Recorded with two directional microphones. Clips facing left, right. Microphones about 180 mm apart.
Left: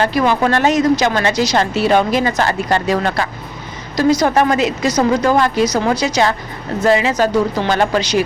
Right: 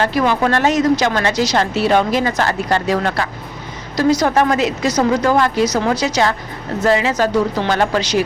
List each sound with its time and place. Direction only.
0.0 s a woman's voice: 15° left (ahead or behind)